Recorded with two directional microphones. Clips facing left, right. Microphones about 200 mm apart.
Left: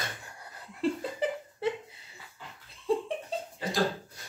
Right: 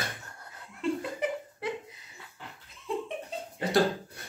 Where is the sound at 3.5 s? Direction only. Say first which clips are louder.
Right 5 dB; 65° right (ahead or behind).